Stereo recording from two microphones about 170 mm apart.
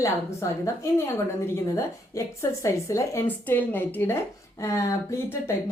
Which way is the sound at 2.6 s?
15° left (ahead or behind).